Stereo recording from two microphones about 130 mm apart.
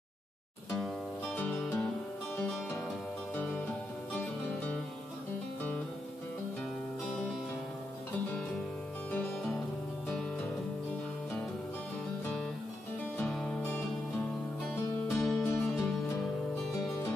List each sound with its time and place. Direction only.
0.7 s music: 5° left (ahead or behind)
3.3 s music: 15° left (ahead or behind)
9.1 s music: 5° left (ahead or behind)
13.2 s music: 5° left (ahead or behind)
13.6 s music: 15° left (ahead or behind)
15.2 s music: 5° left (ahead or behind)